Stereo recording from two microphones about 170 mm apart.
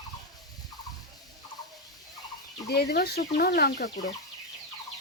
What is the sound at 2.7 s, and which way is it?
Speech, 70° left (ahead or behind).